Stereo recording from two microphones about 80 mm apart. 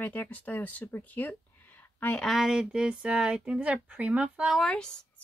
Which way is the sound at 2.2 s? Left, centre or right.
Centre.